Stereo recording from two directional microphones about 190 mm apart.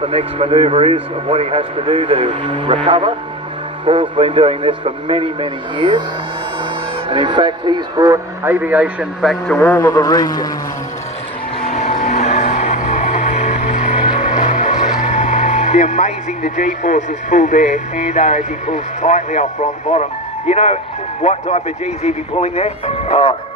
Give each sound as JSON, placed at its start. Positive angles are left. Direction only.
{"t": 0.0, "sound": "a man's voice", "side_deg": -30}
{"t": 7.1, "sound": "speech", "side_deg": -25}
{"t": 9.6, "sound": "a man's voice", "side_deg": 15}
{"t": 12.1, "sound": "music", "side_deg": 35}
{"t": 19.9, "sound": "speech", "side_deg": 40}